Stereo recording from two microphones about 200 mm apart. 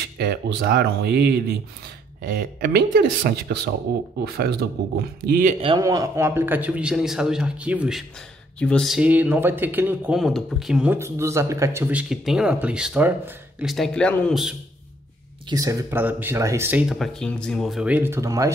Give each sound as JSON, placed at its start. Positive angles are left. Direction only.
{"t": 0.2, "sound": "speech", "side_deg": -50}
{"t": 5.8, "sound": "speech", "side_deg": -15}
{"t": 8.5, "sound": "speech", "side_deg": 5}
{"t": 15.5, "sound": "speech", "side_deg": -15}